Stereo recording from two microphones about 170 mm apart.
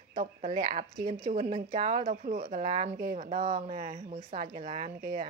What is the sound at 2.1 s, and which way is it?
Speech, 45° right (ahead or behind).